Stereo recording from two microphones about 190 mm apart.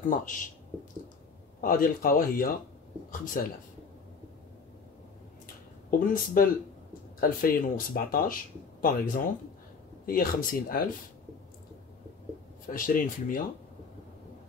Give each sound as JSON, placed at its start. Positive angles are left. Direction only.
{"t": 1.6, "sound": "speech", "side_deg": 50}
{"t": 5.9, "sound": "speech", "side_deg": 50}
{"t": 12.6, "sound": "speech", "side_deg": 45}